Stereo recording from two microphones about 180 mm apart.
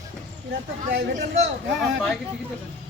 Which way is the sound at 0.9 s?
55° right (ahead or behind).